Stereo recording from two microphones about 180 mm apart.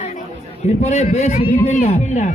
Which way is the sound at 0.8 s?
40° left (ahead or behind).